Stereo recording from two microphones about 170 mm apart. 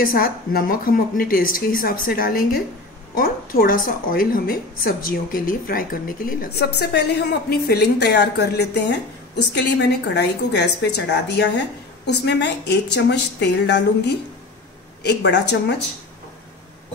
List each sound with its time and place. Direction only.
0.0 s a woman's voice: 60° left (ahead or behind); by 15.7 s 85° left